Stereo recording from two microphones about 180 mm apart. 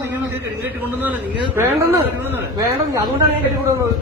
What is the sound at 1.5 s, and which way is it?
Speech, 15° right (ahead or behind).